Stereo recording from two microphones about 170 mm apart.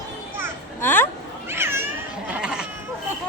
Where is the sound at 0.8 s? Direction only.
10° left (ahead or behind).